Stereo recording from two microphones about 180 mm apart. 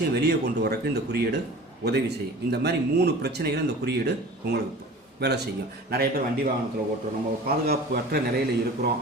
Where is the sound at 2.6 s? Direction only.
65° right (ahead or behind).